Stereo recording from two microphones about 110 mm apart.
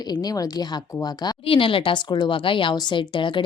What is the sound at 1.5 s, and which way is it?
Speech, 55° left (ahead or behind).